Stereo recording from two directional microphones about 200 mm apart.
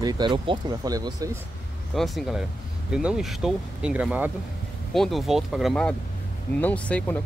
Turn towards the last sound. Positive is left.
turn(degrees=5)  # may be behind; listen again after turning